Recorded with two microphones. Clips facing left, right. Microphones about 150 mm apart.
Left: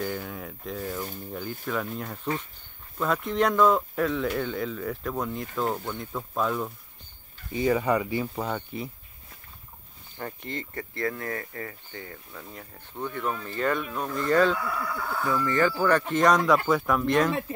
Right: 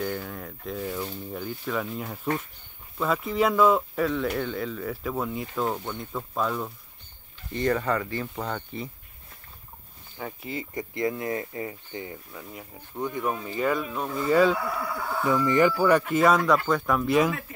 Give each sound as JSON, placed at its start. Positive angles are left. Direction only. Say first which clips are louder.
{"t": 0.0, "sound": "speech", "louder": "right 1 dB", "side_deg": 0}
{"t": 10.1, "sound": "speech", "louder": "right 1 dB", "side_deg": -5}
{"t": 12.3, "sound": "speech", "louder": "right 2 dB", "side_deg": -5}
{"t": 14.8, "sound": "speech", "louder": "right 1 dB", "side_deg": -20}
{"t": 17.3, "sound": "speech", "louder": "left 4 dB", "side_deg": 25}